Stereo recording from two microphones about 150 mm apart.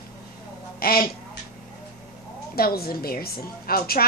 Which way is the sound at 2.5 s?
90° left.